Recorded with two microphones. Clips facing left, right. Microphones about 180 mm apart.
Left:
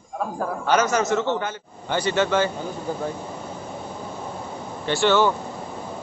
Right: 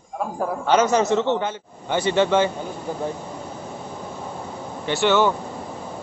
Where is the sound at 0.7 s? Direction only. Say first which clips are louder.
Right 3 dB; 25° right (ahead or behind).